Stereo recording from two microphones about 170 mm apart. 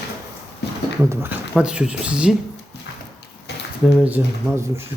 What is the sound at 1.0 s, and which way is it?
Speech, 10° right (ahead or behind).